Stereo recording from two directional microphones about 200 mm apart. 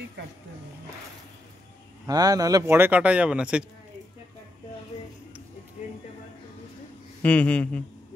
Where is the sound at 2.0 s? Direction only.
20° right (ahead or behind).